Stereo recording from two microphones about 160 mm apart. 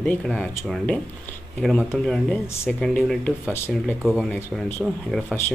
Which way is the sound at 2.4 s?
15° left (ahead or behind).